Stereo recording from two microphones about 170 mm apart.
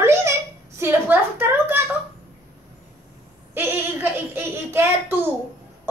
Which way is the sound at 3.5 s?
10° right (ahead or behind).